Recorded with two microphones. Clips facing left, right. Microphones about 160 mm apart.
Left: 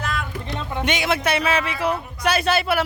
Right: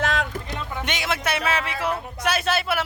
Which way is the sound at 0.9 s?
Centre (ahead or behind).